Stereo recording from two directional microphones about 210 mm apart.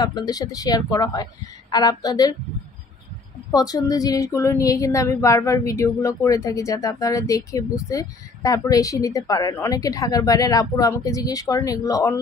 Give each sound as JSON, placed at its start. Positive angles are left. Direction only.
{"t": 0.0, "sound": "a woman's voice", "side_deg": 20}
{"t": 3.5, "sound": "a woman's voice", "side_deg": 15}